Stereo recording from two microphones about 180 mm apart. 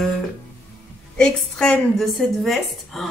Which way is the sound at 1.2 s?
5° left (ahead or behind).